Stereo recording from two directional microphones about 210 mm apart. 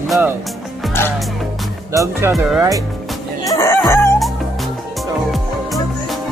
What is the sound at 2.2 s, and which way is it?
Speech, 10° right (ahead or behind).